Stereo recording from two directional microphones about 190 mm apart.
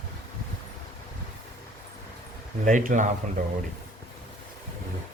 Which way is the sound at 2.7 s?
40° right (ahead or behind).